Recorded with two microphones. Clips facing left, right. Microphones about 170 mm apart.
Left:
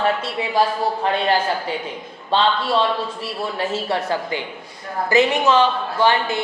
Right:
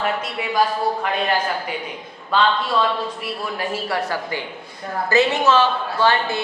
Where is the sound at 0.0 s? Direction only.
30° left (ahead or behind).